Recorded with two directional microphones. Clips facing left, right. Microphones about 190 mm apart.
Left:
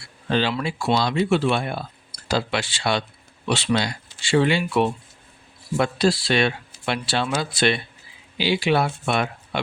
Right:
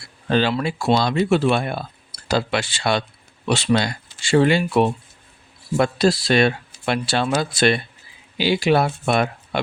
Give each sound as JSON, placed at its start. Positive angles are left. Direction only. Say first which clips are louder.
{"t": 0.3, "sound": "speech", "louder": "right 3 dB", "side_deg": -45}